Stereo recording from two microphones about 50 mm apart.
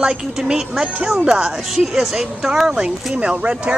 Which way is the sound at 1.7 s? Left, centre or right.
Centre.